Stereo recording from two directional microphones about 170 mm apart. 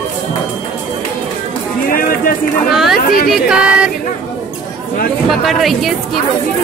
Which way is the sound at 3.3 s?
5° right (ahead or behind).